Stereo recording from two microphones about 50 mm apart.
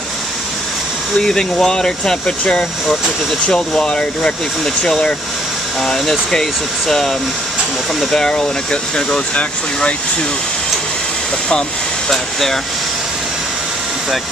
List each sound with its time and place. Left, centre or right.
1.1 s speech: centre
3.4 s speech: centre
12.1 s speech: centre